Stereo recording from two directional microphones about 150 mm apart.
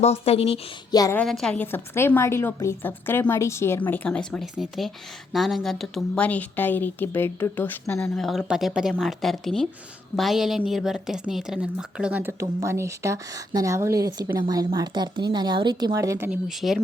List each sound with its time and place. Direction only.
0.0 s speech: 45° left (ahead or behind)
0.9 s a woman's voice: 25° left (ahead or behind)
1.1 s a woman's voice: 5° left (ahead or behind)
8.1 s a woman's voice: centre (ahead or behind)
12.4 s speech: 20° right (ahead or behind)
16.5 s a woman's voice: centre (ahead or behind)